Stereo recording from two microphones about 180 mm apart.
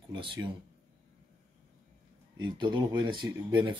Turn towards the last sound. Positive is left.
turn(degrees=-25)  # may be behind; listen again after turning